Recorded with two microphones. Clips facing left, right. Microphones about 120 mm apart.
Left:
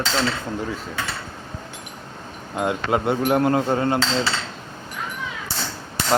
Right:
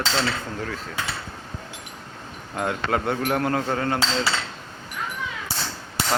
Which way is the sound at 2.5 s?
15° left (ahead or behind).